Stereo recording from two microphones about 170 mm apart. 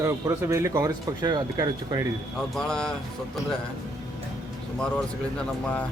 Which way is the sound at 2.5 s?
5° left (ahead or behind).